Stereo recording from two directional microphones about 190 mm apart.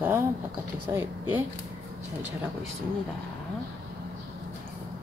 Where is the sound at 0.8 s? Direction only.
10° right (ahead or behind).